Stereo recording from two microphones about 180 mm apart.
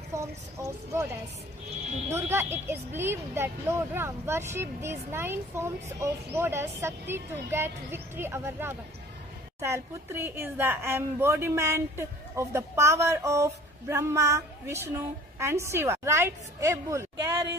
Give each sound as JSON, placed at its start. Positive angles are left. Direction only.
{"t": 0.1, "sound": "a woman's voice", "side_deg": -15}
{"t": 2.0, "sound": "a woman's voice", "side_deg": -15}